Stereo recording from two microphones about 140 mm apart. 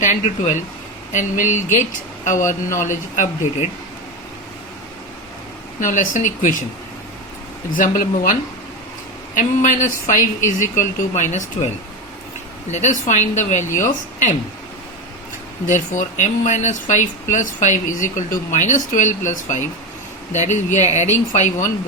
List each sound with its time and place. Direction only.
0.0 s speech: 65° left (ahead or behind)
2.4 s a man's voice: 20° left (ahead or behind)
2.8 s speech: 65° left (ahead or behind)
5.8 s speech: 65° left (ahead or behind)
7.8 s speech: 75° left (ahead or behind)
15.6 s speech: 65° left (ahead or behind)